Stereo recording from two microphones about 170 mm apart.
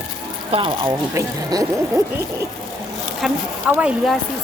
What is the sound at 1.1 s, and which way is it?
Speech, 20° right (ahead or behind).